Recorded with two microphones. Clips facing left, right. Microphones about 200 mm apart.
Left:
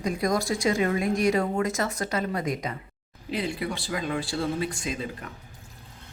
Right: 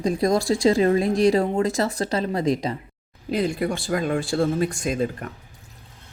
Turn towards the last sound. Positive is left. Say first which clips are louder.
# right 8 dB
turn(degrees=-50)  # may be behind; listen again after turning